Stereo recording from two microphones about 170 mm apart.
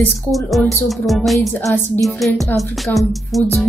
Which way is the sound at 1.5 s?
15° left (ahead or behind).